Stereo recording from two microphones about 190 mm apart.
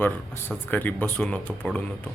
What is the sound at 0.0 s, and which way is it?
Speech, 10° left (ahead or behind).